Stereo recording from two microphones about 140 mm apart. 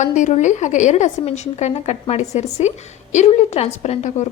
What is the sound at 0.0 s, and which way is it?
A woman's voice, 60° left (ahead or behind).